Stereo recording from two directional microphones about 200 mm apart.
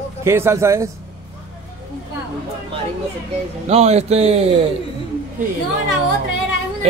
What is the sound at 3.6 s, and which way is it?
Speech, 30° right (ahead or behind).